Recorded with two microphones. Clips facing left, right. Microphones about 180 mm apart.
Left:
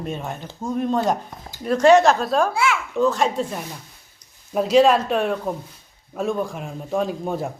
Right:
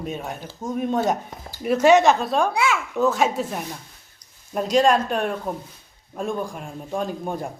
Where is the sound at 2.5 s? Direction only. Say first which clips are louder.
Left 1 dB; 20° right (ahead or behind).